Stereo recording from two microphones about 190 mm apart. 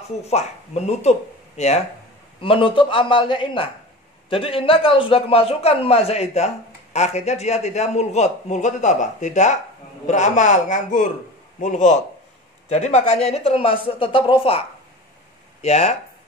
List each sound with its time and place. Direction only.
0.2 s a man's voice: 35° left (ahead or behind)
15.6 s a man's voice: 35° left (ahead or behind)